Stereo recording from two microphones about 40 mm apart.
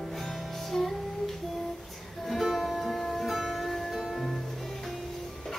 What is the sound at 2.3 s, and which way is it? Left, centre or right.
Music, centre.